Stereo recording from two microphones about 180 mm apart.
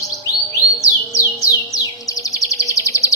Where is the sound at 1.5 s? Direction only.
20° left (ahead or behind).